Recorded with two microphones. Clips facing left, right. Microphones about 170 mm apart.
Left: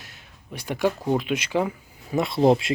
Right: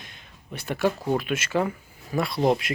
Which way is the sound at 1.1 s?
15° left (ahead or behind).